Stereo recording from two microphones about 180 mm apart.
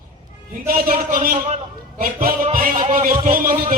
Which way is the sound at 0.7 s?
55° right (ahead or behind).